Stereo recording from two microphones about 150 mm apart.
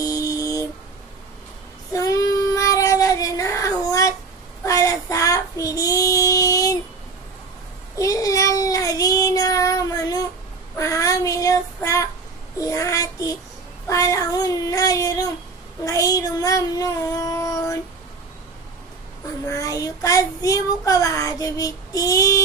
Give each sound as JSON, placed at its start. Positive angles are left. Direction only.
{"t": 0.0, "sound": "a sound", "side_deg": 25}
{"t": 1.9, "sound": "child singing", "side_deg": 20}
{"t": 7.9, "sound": "child singing", "side_deg": 20}
{"t": 19.4, "sound": "child singing", "side_deg": 20}